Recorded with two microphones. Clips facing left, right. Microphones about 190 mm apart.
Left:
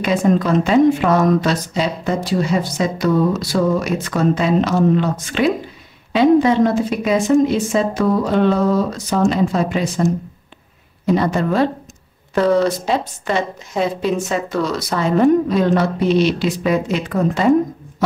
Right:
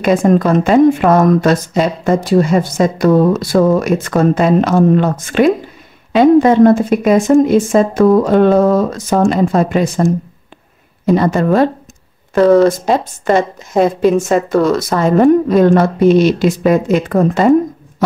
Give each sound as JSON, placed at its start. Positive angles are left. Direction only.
{"t": 0.0, "sound": "speech", "side_deg": -50}